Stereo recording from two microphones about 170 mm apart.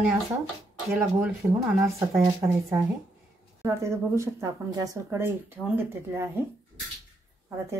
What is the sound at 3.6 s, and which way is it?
Speech, 15° right (ahead or behind).